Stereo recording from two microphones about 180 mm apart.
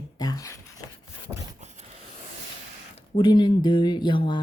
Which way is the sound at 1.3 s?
10° right (ahead or behind).